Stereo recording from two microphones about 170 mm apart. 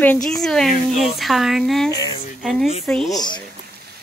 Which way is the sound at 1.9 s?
25° left (ahead or behind).